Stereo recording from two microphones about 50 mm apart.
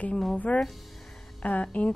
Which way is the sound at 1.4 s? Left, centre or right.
Left.